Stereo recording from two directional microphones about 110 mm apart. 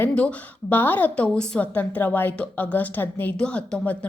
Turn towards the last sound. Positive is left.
turn(degrees=10)  # may be behind; listen again after turning